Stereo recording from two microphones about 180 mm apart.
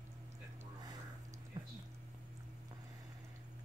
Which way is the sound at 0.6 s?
20° right (ahead or behind).